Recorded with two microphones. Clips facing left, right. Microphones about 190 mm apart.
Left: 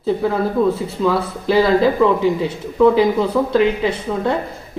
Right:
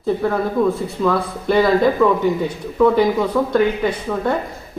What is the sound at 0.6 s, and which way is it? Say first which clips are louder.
Speech: left 1 dB; 5° left (ahead or behind).